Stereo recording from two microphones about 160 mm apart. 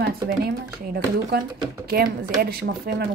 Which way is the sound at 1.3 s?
85° right.